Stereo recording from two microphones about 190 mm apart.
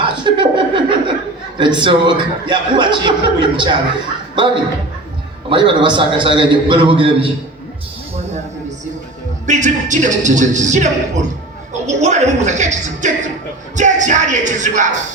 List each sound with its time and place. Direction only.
0.0 s chuckle: 25° right (ahead or behind)
1.5 s a man's voice: 25° right (ahead or behind)
9.5 s speech: 40° right (ahead or behind)